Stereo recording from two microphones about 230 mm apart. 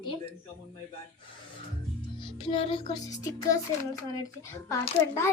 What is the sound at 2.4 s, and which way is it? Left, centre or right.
Music, left.